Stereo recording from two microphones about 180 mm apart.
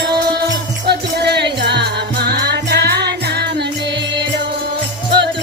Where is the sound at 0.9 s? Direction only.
65° right (ahead or behind).